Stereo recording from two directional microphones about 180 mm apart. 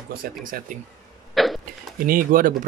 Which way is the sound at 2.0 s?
50° right (ahead or behind).